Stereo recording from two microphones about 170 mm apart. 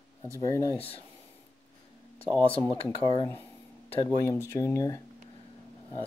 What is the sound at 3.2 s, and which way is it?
Speech, 15° left (ahead or behind).